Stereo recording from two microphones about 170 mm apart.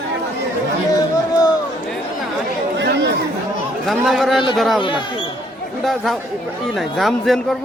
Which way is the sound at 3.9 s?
Centre (ahead or behind).